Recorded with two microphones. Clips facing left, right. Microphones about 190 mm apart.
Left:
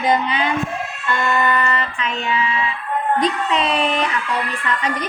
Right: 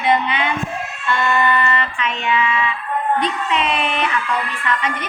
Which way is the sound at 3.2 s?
35° left (ahead or behind).